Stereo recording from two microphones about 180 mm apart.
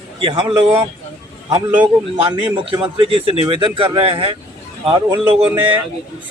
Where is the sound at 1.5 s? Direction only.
10° right (ahead or behind).